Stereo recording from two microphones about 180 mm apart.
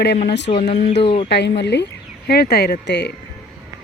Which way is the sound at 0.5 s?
35° left (ahead or behind).